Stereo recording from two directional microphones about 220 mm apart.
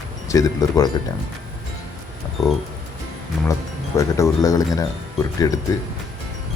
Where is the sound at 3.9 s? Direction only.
15° left (ahead or behind).